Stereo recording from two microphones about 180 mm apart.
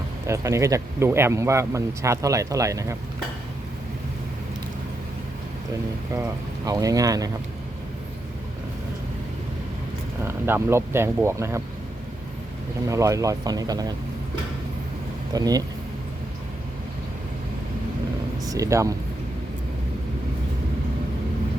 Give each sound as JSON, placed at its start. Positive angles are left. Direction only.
{"t": 0.3, "sound": "speech", "side_deg": -15}
{"t": 6.7, "sound": "speech", "side_deg": -20}
{"t": 10.2, "sound": "speech", "side_deg": -15}
{"t": 12.9, "sound": "speech", "side_deg": -15}
{"t": 15.3, "sound": "speech", "side_deg": -20}
{"t": 18.4, "sound": "speech", "side_deg": -20}